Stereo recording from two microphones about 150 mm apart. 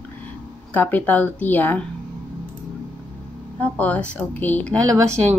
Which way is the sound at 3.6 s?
10° left (ahead or behind).